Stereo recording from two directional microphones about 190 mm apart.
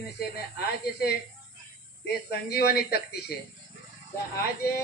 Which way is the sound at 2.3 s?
55° left (ahead or behind).